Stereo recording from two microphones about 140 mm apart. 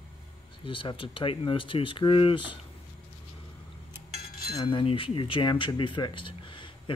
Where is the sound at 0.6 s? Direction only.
35° left (ahead or behind).